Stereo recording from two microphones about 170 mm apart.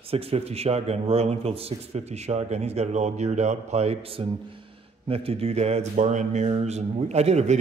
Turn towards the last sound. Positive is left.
turn(degrees=-40)  # may be behind; listen again after turning